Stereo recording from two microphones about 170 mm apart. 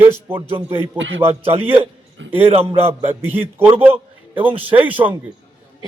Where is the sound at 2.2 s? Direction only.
90° right.